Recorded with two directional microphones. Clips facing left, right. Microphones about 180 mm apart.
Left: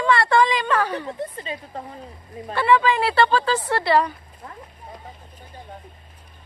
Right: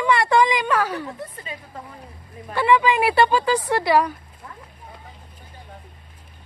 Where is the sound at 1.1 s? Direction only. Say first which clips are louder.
Left 5 dB; 30° left (ahead or behind).